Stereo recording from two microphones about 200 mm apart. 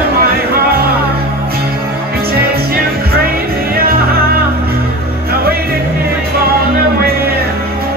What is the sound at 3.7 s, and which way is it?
Music, 50° right (ahead or behind).